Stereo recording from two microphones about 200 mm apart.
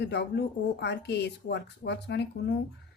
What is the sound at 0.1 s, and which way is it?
Speech, 55° left (ahead or behind).